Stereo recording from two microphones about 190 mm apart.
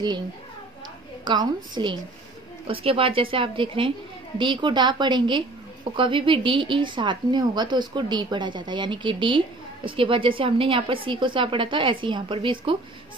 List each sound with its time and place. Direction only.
1.2 s a woman's voice: 25° right (ahead or behind)